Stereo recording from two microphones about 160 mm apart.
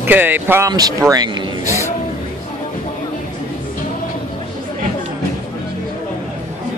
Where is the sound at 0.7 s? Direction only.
25° right (ahead or behind).